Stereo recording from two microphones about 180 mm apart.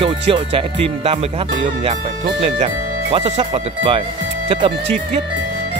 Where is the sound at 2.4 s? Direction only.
35° right (ahead or behind).